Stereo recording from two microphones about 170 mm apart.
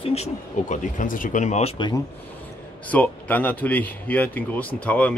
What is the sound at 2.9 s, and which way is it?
Speech, 10° left (ahead or behind).